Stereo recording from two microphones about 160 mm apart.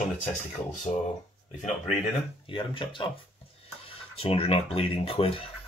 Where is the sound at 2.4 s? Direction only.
35° left (ahead or behind).